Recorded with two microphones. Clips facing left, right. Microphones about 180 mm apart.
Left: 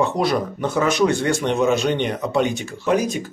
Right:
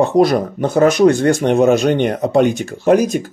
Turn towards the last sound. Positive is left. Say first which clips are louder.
# right 7 dB
turn(degrees=-45)  # may be behind; listen again after turning